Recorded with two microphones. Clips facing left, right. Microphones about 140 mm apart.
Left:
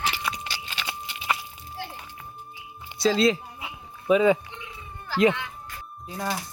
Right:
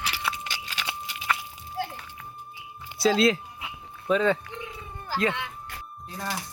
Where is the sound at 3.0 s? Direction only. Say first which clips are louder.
Even; centre (ahead or behind).